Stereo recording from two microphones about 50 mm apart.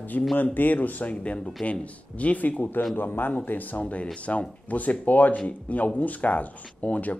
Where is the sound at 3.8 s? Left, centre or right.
Left.